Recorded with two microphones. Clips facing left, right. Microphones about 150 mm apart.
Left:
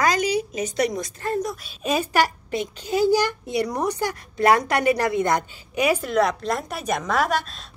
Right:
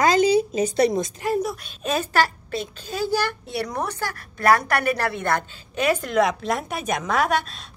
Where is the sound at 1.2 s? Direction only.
5° right (ahead or behind).